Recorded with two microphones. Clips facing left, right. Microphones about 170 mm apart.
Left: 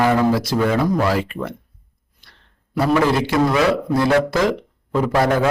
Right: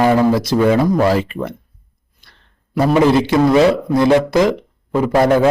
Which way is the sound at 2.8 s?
20° right (ahead or behind).